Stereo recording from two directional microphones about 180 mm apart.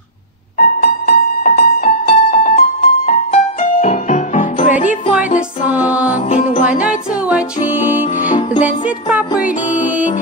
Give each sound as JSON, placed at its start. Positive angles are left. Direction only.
{"t": 0.6, "sound": "music", "side_deg": 55}
{"t": 4.6, "sound": "music", "side_deg": -10}
{"t": 6.2, "sound": "music", "side_deg": 40}
{"t": 6.8, "sound": "music", "side_deg": -5}